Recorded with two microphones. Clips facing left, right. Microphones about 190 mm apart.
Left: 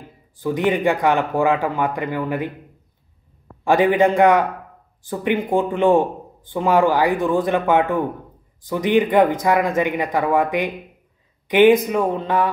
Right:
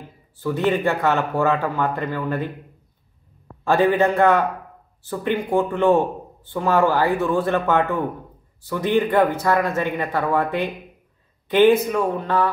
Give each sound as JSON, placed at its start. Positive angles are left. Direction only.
{"t": 0.4, "sound": "speech", "side_deg": 15}
{"t": 3.6, "sound": "speech", "side_deg": 15}